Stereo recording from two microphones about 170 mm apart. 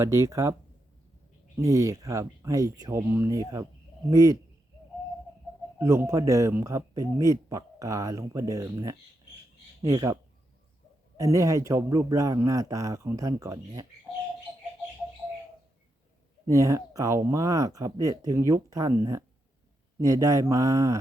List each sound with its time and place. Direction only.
0.0 s speech: 15° right (ahead or behind)
1.5 s speech: 20° right (ahead or behind)
5.8 s speech: 20° right (ahead or behind)
11.2 s speech: 20° right (ahead or behind)
16.5 s speech: 20° right (ahead or behind)